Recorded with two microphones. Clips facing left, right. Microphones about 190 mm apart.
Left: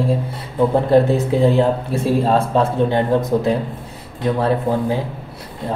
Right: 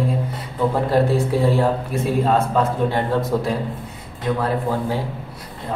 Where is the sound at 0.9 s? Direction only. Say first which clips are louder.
Left 4 dB; 20° left (ahead or behind).